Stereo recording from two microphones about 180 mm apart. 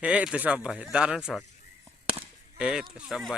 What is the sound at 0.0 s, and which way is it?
Speech, 5° right (ahead or behind).